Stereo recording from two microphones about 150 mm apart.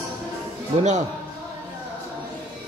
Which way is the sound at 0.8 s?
50° right (ahead or behind).